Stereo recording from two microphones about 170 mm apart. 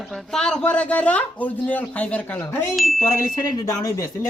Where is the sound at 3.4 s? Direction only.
20° left (ahead or behind).